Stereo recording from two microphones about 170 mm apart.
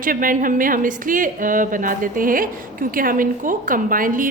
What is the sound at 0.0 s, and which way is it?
A woman's voice, 55° right (ahead or behind).